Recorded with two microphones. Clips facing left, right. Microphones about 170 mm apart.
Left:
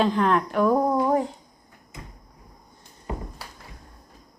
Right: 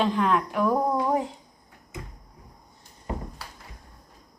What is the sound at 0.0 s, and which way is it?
Speech, centre (ahead or behind).